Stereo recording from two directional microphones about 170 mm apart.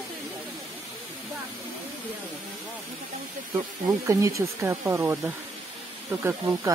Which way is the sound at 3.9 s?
15° right (ahead or behind).